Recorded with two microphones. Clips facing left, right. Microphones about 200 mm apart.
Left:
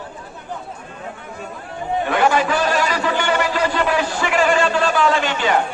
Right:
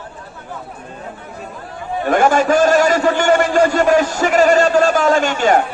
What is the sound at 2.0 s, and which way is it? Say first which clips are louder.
A man's voice: right 5 dB; 45° right (ahead or behind).